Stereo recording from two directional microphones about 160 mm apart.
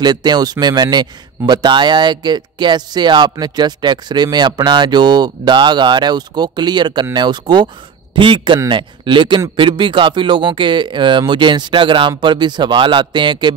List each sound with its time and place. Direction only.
0.0 s speech: 25° right (ahead or behind)